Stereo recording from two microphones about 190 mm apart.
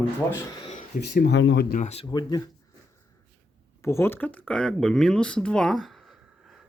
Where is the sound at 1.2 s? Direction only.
65° left (ahead or behind).